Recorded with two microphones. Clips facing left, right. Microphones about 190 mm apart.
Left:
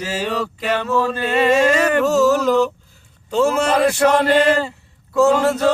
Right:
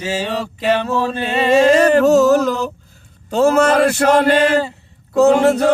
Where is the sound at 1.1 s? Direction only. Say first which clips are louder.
Right 1 dB; 30° right (ahead or behind).